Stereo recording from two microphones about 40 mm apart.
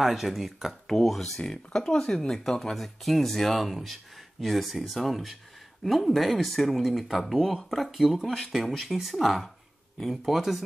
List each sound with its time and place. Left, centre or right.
0.0 s speech: centre
1.4 s speech: centre